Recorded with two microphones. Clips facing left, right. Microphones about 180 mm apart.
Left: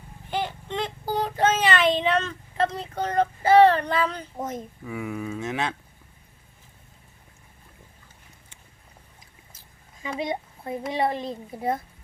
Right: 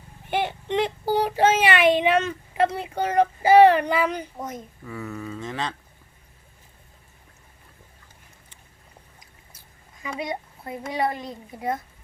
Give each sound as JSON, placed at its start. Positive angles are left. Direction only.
{"t": 0.3, "sound": "child singing", "side_deg": -20}
{"t": 2.0, "sound": "speech", "side_deg": -15}
{"t": 4.4, "sound": "speech", "side_deg": 25}
{"t": 4.9, "sound": "speech", "side_deg": 10}
{"t": 10.2, "sound": "speech", "side_deg": 25}